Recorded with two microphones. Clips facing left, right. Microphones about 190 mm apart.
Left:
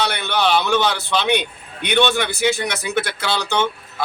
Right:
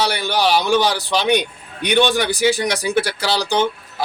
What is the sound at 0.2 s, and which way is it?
A man's voice, 35° right (ahead or behind).